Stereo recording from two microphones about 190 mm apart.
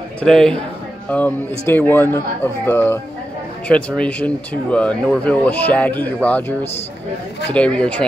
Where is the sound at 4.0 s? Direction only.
5° left (ahead or behind).